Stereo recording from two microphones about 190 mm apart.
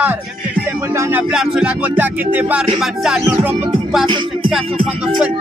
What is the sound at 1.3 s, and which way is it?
Music, 5° right (ahead or behind).